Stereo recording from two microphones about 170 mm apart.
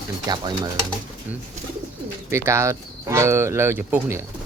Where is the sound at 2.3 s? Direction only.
15° right (ahead or behind).